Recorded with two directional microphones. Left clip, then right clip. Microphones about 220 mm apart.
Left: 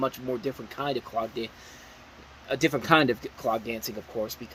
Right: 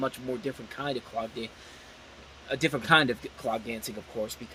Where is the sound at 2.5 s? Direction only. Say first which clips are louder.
Left 1 dB; centre (ahead or behind).